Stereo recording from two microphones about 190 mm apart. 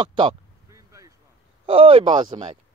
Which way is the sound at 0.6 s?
15° right (ahead or behind).